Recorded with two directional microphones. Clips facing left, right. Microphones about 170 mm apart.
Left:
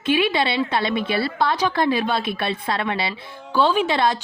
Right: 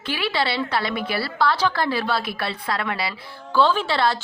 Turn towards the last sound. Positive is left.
turn(degrees=20)  # may be behind; listen again after turning